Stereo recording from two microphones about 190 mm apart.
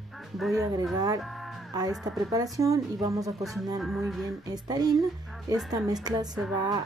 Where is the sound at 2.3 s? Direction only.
20° right (ahead or behind).